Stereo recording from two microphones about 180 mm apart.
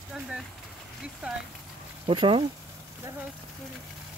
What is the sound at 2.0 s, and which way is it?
Speech, 30° right (ahead or behind).